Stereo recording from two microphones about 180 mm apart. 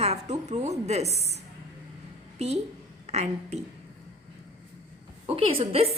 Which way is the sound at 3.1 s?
35° right (ahead or behind).